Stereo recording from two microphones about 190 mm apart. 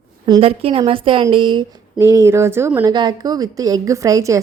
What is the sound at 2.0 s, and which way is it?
A woman's voice, 15° right (ahead or behind).